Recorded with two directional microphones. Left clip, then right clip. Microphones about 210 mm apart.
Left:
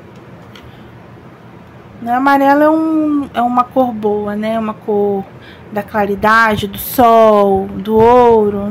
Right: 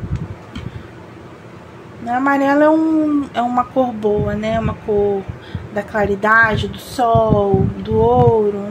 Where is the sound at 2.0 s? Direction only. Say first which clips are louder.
Left 5 dB; 15° left (ahead or behind).